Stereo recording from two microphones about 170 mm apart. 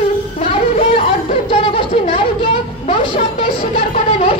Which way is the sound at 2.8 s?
40° left (ahead or behind).